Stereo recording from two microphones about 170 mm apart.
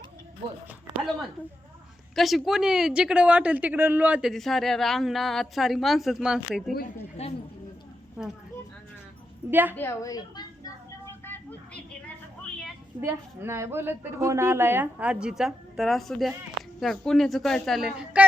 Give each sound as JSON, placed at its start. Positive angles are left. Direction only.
{"t": 2.1, "sound": "speech", "side_deg": 0}
{"t": 7.2, "sound": "speech", "side_deg": 35}
{"t": 9.5, "sound": "a woman's voice", "side_deg": -10}
{"t": 9.7, "sound": "a woman's voice", "side_deg": 15}
{"t": 11.0, "sound": "vehicle", "side_deg": 10}
{"t": 13.0, "sound": "a woman's voice", "side_deg": -15}